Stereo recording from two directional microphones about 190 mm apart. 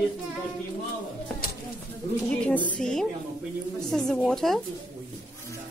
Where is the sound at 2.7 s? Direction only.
5° left (ahead or behind).